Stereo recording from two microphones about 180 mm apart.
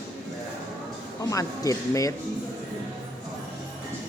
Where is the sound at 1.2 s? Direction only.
20° left (ahead or behind).